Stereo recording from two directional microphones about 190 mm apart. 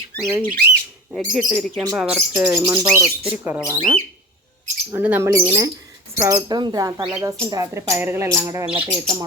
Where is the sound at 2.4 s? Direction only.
15° right (ahead or behind).